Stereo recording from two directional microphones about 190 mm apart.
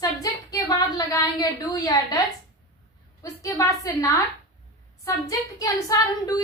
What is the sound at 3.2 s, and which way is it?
A woman's voice, 15° left (ahead or behind).